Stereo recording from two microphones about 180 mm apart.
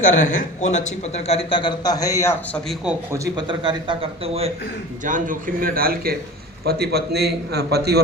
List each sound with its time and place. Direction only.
0.0 s a man's voice: 45° left (ahead or behind); by 2.6 s 15° left (ahead or behind)
3.1 s a man's voice: 25° right (ahead or behind)
5.0 s a man's voice: 45° right (ahead or behind); by 8.0 s 65° right (ahead or behind)